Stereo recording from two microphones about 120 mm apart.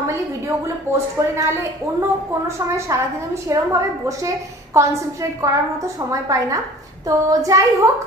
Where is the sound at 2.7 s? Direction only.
25° right (ahead or behind).